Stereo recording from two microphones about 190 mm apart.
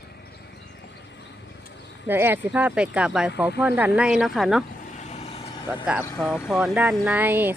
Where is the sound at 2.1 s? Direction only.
10° right (ahead or behind).